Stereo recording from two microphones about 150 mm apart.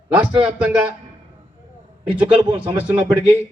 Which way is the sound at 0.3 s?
10° right (ahead or behind).